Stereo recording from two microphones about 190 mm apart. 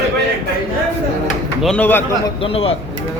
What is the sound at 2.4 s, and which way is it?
Speech, 30° left (ahead or behind).